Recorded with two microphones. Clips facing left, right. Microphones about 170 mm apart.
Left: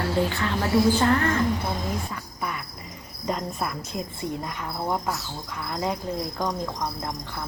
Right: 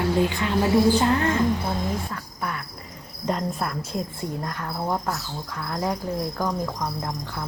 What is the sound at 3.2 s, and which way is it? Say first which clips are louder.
Speech: right 2 dB; 5° left (ahead or behind).